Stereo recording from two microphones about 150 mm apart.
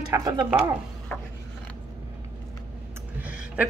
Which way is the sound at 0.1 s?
25° right (ahead or behind).